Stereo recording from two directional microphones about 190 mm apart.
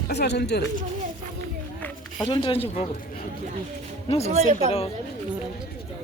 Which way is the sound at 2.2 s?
25° left (ahead or behind).